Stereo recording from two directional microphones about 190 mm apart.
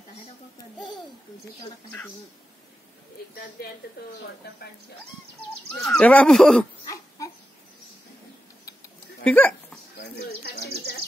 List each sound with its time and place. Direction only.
0.7 s babbling: centre (ahead or behind)
1.9 s speech: 10° left (ahead or behind)
5.8 s speech: 10° left (ahead or behind)
6.8 s crying: 20° left (ahead or behind)
9.2 s speech: 5° left (ahead or behind)
10.0 s speech: 60° left (ahead or behind)